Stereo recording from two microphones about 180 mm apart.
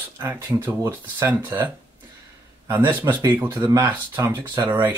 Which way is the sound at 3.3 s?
10° right (ahead or behind).